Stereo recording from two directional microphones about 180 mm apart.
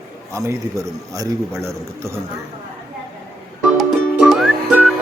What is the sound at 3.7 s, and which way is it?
Music, centre (ahead or behind).